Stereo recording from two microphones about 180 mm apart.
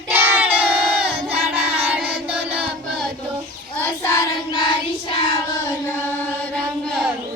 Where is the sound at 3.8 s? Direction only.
15° left (ahead or behind).